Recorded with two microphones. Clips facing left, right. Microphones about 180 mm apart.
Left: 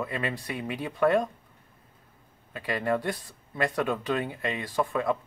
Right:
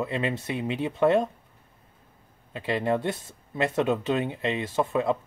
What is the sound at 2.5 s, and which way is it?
Speech, 25° right (ahead or behind).